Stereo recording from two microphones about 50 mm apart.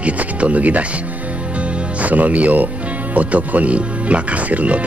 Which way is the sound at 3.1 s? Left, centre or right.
Right.